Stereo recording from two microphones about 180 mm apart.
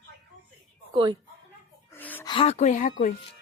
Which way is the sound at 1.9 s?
10° left (ahead or behind).